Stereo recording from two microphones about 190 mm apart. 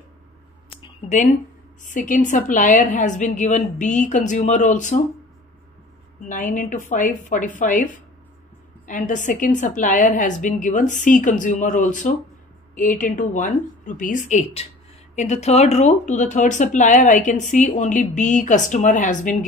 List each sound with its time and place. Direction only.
0.7 s a sound: 25° left (ahead or behind)
1.8 s speech: 45° left (ahead or behind)
6.2 s a woman's voice: 45° left (ahead or behind)